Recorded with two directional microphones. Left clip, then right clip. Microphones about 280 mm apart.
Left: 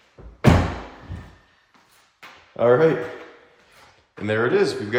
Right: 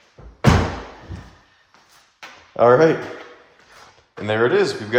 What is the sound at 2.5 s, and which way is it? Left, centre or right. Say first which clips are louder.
Speech: right 4 dB; right.